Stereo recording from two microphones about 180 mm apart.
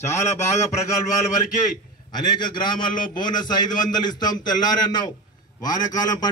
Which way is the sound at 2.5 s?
25° left (ahead or behind).